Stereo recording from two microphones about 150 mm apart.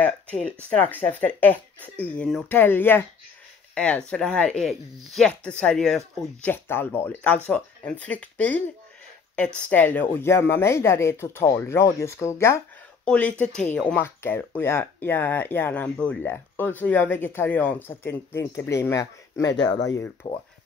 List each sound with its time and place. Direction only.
0.0 s a sound: 10° left (ahead or behind)
0.7 s speech: 10° left (ahead or behind)
9.7 s speech: 10° left (ahead or behind)
13.0 s speech: 5° left (ahead or behind); by 20.4 s 30° left (ahead or behind)